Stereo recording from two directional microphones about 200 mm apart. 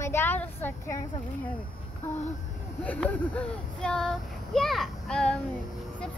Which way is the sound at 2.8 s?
10° left (ahead or behind).